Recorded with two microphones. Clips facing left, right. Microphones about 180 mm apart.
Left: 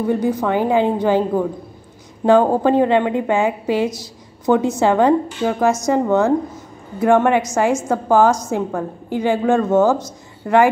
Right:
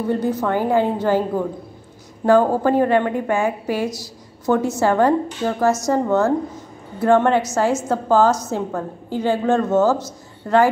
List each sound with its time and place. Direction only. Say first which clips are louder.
0.1 s a woman's voice: left 1 dB; 15° left (ahead or behind)
2.2 s a woman's voice: left 2 dB; 20° left (ahead or behind)